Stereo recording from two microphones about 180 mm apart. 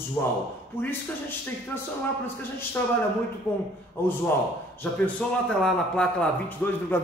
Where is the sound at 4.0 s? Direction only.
10° left (ahead or behind).